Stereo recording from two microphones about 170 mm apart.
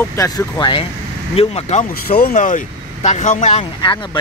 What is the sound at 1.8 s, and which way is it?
Speech, 55° left (ahead or behind).